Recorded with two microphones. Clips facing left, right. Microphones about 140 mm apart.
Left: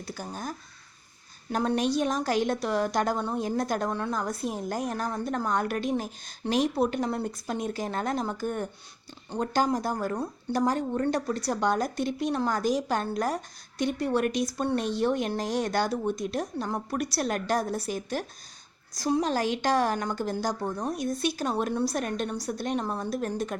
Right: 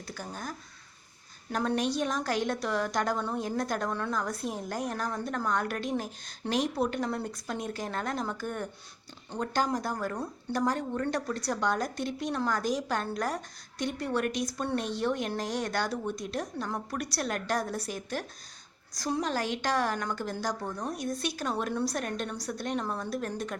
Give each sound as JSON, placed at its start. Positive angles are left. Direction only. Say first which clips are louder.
{"t": 0.3, "sound": "a woman's voice", "louder": "left 3 dB", "side_deg": 20}
{"t": 1.5, "sound": "a woman's voice", "louder": "left 3 dB", "side_deg": 25}
{"t": 17.9, "sound": "a woman's voice", "louder": "left 4 dB", "side_deg": 15}